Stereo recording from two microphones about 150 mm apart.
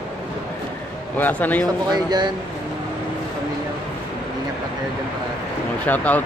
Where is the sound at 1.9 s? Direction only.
25° right (ahead or behind).